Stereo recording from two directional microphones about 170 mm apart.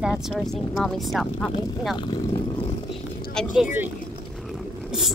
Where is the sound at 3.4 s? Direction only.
5° left (ahead or behind).